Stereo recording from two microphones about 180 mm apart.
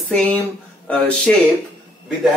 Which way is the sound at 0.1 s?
10° left (ahead or behind).